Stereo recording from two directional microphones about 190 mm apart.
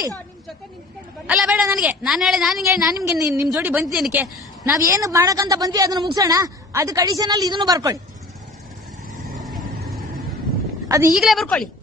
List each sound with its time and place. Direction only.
1.2 s a woman's voice: 5° right (ahead or behind)
3.1 s a woman's voice: 15° right (ahead or behind)
9.4 s vehicle: centre (ahead or behind)
11.1 s a woman's voice: centre (ahead or behind)